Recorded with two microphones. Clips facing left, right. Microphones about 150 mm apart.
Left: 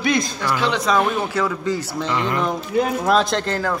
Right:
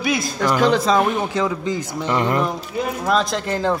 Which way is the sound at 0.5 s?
45° right (ahead or behind).